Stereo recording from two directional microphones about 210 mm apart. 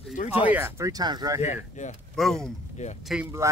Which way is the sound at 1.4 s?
35° left (ahead or behind).